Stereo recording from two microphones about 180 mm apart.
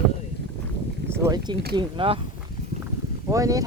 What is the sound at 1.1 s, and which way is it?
Speech, 20° right (ahead or behind).